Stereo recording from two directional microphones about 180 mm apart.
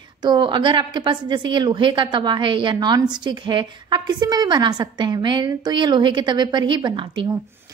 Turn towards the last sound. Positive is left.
turn(degrees=-25)  # may be behind; listen again after turning